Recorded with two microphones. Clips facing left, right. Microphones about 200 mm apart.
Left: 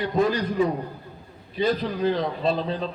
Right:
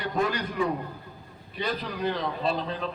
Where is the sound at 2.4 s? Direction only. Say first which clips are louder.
Left 4 dB; 35° left (ahead or behind).